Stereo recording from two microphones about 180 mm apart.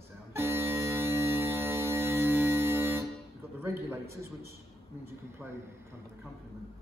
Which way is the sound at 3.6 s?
15° right (ahead or behind).